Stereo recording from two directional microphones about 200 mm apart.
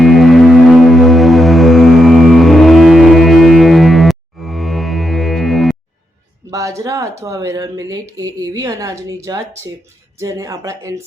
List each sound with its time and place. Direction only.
0.0 s music: centre (ahead or behind)
6.5 s speech: 15° right (ahead or behind)